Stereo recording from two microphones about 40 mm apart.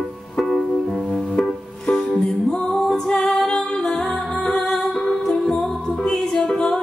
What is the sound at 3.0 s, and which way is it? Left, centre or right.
A capella, centre.